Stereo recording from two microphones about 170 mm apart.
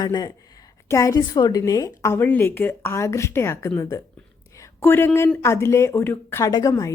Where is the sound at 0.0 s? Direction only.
25° left (ahead or behind).